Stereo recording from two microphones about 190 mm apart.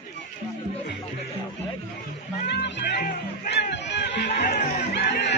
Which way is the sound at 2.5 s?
65° left (ahead or behind).